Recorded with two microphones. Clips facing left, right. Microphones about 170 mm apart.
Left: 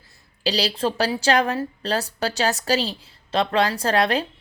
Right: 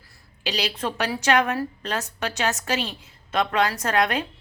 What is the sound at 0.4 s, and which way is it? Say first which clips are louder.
A woman's voice: left 5 dB; 35° left (ahead or behind).